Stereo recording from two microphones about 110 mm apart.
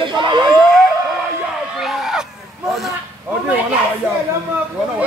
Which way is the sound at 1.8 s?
Centre (ahead or behind).